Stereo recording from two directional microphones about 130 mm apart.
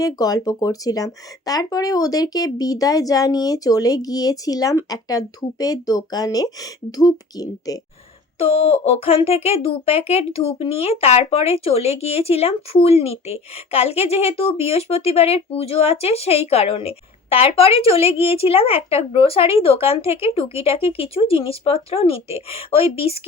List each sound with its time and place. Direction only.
0.0 s speech: 30° left (ahead or behind)
8.4 s a child's voice: 50° left (ahead or behind)